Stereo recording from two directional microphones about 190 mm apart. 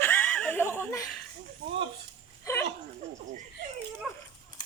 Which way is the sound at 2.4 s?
15° left (ahead or behind).